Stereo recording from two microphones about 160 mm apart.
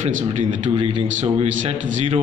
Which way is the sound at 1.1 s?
45° right (ahead or behind).